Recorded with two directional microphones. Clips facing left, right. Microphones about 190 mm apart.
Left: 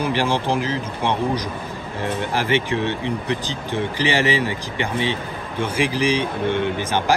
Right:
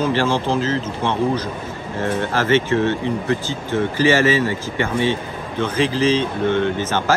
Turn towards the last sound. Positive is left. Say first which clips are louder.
# right 1 dB
turn(degrees=15)  # may be behind; listen again after turning